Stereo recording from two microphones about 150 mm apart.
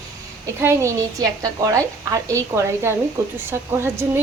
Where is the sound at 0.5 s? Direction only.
15° right (ahead or behind).